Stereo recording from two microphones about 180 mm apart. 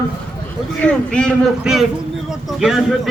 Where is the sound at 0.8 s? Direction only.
5° left (ahead or behind).